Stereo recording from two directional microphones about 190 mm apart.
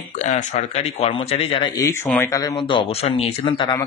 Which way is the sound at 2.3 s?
20° left (ahead or behind).